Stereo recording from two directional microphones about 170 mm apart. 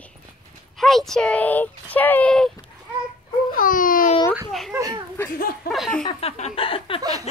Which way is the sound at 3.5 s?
55° left (ahead or behind).